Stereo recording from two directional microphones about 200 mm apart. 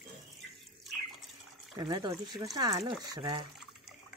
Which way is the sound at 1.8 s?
20° right (ahead or behind).